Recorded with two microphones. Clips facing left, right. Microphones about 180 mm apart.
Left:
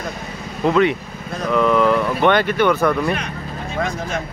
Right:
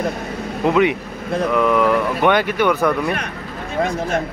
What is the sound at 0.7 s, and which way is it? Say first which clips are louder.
Speech: even; 15° right (ahead or behind).